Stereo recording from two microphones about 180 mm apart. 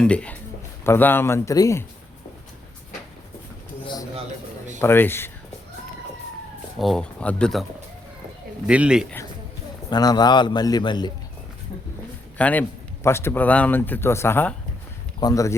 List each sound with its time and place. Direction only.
0.0 s a man's voice: 5° left (ahead or behind)
4.8 s a man's voice: 10° left (ahead or behind)
6.7 s speech: centre (ahead or behind)
8.6 s speech: 5° right (ahead or behind)
9.9 s a man's voice: 20° left (ahead or behind)
12.4 s a man's voice: 10° left (ahead or behind)